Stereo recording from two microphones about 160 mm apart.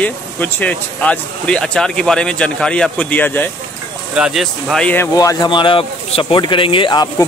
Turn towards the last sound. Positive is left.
turn(degrees=25)  # may be behind; listen again after turning